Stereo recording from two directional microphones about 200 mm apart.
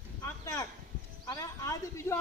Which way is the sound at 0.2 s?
15° left (ahead or behind).